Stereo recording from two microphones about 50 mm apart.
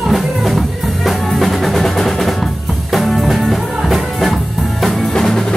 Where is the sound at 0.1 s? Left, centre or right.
Centre.